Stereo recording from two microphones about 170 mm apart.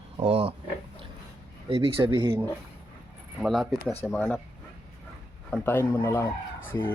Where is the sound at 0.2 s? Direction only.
35° right (ahead or behind).